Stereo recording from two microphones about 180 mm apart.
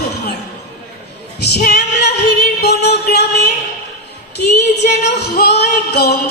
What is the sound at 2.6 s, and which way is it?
Music, 65° left (ahead or behind).